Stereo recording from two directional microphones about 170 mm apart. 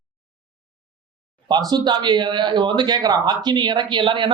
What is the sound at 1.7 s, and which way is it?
Speech, 25° right (ahead or behind).